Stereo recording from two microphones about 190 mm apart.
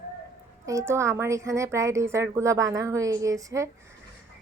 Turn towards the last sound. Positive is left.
turn(degrees=-15)  # may be behind; listen again after turning